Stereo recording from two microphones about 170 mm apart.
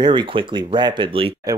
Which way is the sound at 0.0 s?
25° right (ahead or behind).